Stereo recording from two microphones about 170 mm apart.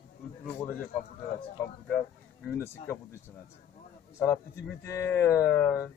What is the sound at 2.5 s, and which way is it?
Speech, 15° left (ahead or behind).